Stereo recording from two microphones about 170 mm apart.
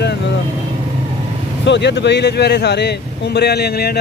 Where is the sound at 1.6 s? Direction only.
90° left.